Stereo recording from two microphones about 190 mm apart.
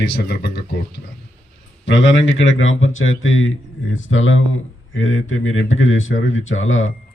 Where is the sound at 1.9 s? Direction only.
80° left.